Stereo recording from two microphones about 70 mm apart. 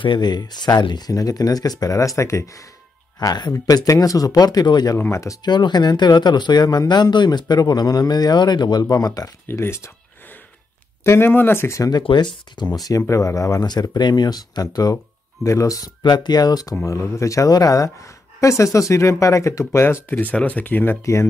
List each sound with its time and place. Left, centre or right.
0.2 s speech: left
1.1 s speech: left
3.2 s speech: left
5.1 s speech: left
5.4 s speech: left
9.5 s speech: left
11.1 s speech: left
11.8 s speech: left
12.7 s speech: left
13.1 s speech: left
15.4 s speech: left
16.8 s speech: left
20.1 s speech: left
21.0 s speech: left